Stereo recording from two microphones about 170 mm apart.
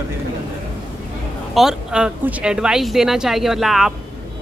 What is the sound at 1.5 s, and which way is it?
Speech, centre (ahead or behind).